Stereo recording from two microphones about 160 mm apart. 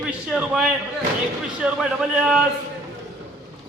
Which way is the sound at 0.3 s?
5° right (ahead or behind).